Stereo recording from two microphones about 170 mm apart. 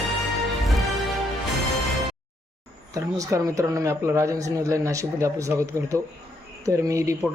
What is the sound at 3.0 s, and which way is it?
Speech, 20° right (ahead or behind).